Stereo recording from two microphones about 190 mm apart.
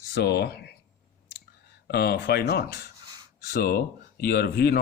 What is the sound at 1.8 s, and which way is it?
A man's voice, 55° left (ahead or behind).